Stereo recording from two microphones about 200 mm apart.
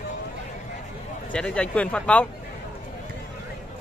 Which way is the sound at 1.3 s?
5° left (ahead or behind).